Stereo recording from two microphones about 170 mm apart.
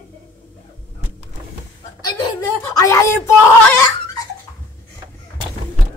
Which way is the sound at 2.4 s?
20° left (ahead or behind).